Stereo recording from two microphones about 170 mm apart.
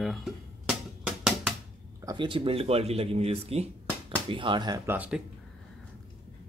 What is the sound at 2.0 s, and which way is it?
Speech, 30° right (ahead or behind).